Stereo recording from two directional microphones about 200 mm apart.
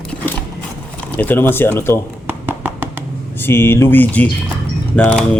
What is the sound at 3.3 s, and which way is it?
Speech, 10° left (ahead or behind).